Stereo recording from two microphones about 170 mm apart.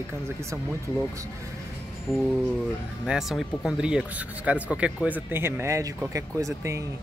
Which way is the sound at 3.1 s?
Centre (ahead or behind).